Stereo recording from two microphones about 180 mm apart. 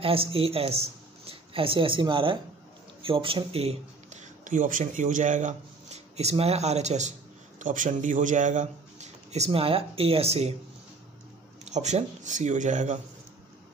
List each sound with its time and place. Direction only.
0.0 s a woman's voice: 30° right (ahead or behind)
11.6 s speech: 40° right (ahead or behind)